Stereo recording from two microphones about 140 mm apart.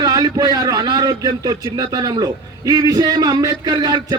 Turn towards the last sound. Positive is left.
turn(degrees=-30)  # may be behind; listen again after turning